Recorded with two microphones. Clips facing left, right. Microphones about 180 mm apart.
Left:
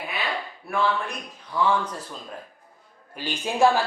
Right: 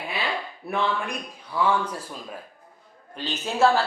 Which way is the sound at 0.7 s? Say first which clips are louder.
Left 1 dB; 20° right (ahead or behind).